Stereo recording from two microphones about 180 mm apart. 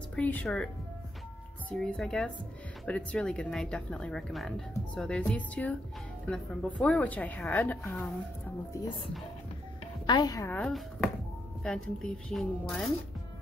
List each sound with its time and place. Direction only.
0.1 s a woman's voice: 10° left (ahead or behind)
1.7 s a woman's voice: 5° left (ahead or behind)
10.0 s a woman's voice: 25° left (ahead or behind)
10.5 s speech: centre (ahead or behind)